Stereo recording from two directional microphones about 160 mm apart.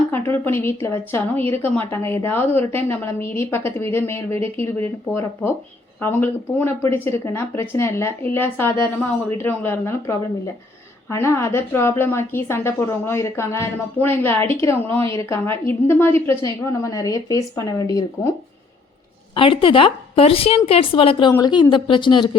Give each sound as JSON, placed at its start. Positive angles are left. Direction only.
{"t": 0.1, "sound": "a woman's voice", "side_deg": 15}
{"t": 19.3, "sound": "a woman's voice", "side_deg": 35}